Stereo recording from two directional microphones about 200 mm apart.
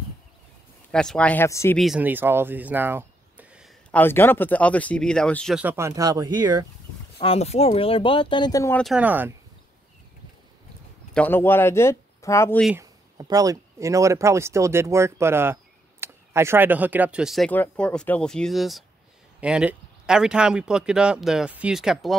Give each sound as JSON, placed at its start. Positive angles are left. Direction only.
{"t": 0.9, "sound": "speech", "side_deg": 5}
{"t": 1.8, "sound": "speech", "side_deg": -5}
{"t": 3.9, "sound": "speech", "side_deg": 10}
{"t": 5.6, "sound": "speech", "side_deg": -10}
{"t": 7.2, "sound": "speech", "side_deg": 30}
{"t": 8.7, "sound": "speech", "side_deg": 0}
{"t": 11.1, "sound": "speech", "side_deg": 10}
{"t": 12.8, "sound": "speech", "side_deg": -15}